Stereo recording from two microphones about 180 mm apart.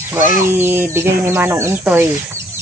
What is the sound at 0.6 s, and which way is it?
Speech, 10° right (ahead or behind).